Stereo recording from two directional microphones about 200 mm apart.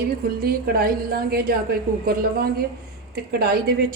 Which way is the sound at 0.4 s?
50° right (ahead or behind).